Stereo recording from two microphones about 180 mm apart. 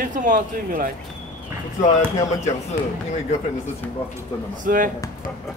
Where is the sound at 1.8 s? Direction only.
40° left (ahead or behind).